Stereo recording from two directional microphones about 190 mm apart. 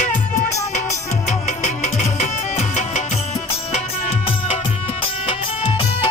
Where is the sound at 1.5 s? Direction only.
40° left (ahead or behind).